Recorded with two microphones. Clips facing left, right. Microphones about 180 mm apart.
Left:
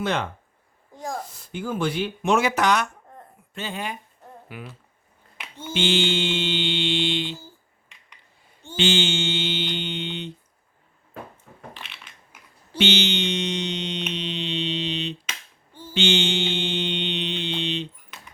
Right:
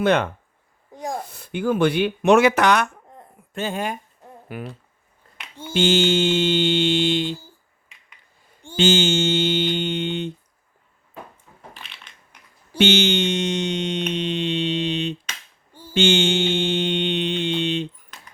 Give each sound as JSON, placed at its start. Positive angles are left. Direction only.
{"t": 0.0, "sound": "speech", "side_deg": -60}
{"t": 0.9, "sound": "speech", "side_deg": -20}
{"t": 1.2, "sound": "speech", "side_deg": -60}
{"t": 3.5, "sound": "speech", "side_deg": -45}
{"t": 5.7, "sound": "speech", "side_deg": -45}
{"t": 8.7, "sound": "speech", "side_deg": -40}
{"t": 11.7, "sound": "crushing", "side_deg": 0}
{"t": 12.7, "sound": "a sound", "side_deg": -50}
{"t": 16.0, "sound": "mantra", "side_deg": -50}